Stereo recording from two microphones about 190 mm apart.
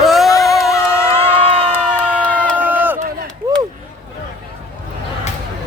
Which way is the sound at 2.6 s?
10° right (ahead or behind).